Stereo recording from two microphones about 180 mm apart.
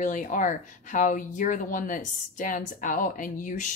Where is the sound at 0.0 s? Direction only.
45° left (ahead or behind).